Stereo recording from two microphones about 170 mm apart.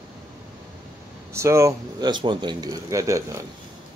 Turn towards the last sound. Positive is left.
turn(degrees=-20)  # may be behind; listen again after turning